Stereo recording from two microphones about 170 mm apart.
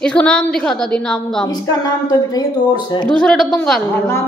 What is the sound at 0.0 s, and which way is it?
A woman's voice, 5° left (ahead or behind).